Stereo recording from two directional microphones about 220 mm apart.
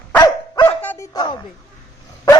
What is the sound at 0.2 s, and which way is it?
Dog, 20° left (ahead or behind).